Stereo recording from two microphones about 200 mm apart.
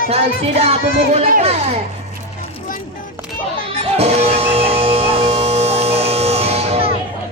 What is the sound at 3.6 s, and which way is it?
Music, 30° right (ahead or behind).